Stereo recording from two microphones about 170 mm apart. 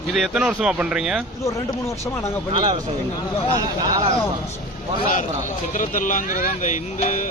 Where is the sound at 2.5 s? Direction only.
25° right (ahead or behind).